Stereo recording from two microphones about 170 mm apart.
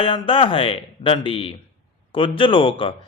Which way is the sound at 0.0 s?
30° left (ahead or behind).